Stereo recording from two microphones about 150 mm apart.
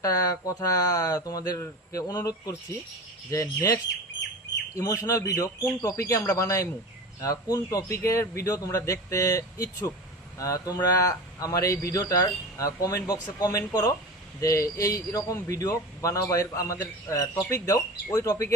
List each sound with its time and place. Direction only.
0.0 s speech: 25° left (ahead or behind)
4.8 s speech: 20° left (ahead or behind)